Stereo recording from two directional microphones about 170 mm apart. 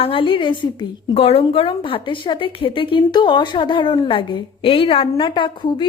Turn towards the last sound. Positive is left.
turn(degrees=30)  # may be behind; listen again after turning